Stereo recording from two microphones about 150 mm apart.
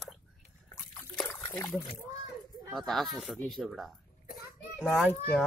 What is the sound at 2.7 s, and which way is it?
Speech, centre (ahead or behind).